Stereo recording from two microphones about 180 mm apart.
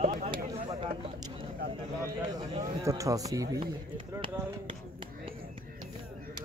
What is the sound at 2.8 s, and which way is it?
Speech, 20° right (ahead or behind).